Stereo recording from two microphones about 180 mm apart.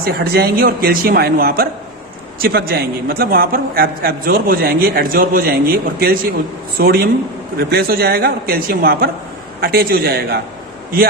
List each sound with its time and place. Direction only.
0.0 s a man's voice: 60° right (ahead or behind)